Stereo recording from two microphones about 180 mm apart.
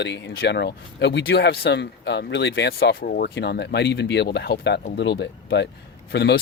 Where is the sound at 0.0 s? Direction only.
70° left (ahead or behind).